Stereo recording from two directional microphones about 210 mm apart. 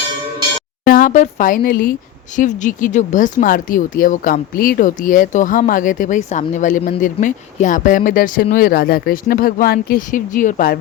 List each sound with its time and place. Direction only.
0.9 s speech: 40° left (ahead or behind)